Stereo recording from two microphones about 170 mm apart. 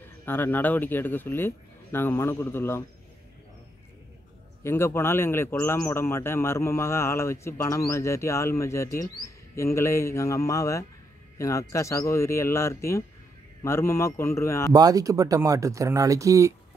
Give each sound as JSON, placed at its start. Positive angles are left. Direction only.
{"t": 0.2, "sound": "a man's voice", "side_deg": 10}
{"t": 4.6, "sound": "a man's voice", "side_deg": 15}
{"t": 14.7, "sound": "speech", "side_deg": -20}